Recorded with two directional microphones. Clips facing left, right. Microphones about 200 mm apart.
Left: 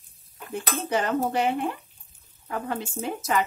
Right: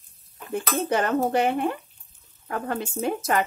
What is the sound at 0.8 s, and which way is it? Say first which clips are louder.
Speech: right 1 dB; 55° right (ahead or behind).